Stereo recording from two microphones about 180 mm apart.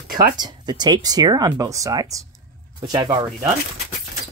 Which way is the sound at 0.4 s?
25° right (ahead or behind).